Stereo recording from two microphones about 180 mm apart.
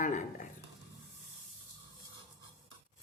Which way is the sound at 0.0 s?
45° left (ahead or behind).